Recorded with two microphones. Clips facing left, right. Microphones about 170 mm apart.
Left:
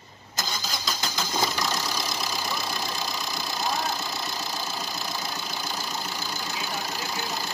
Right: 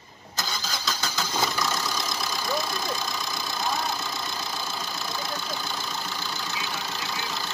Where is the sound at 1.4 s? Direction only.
5° left (ahead or behind).